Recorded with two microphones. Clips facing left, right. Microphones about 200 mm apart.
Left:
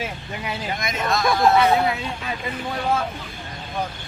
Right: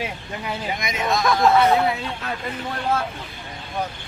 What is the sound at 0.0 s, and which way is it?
Speech, centre (ahead or behind).